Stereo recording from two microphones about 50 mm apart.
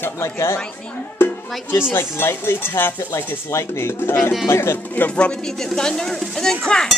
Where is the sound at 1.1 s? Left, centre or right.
Left.